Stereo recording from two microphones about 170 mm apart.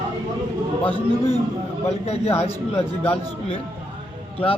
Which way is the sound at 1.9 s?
40° left (ahead or behind).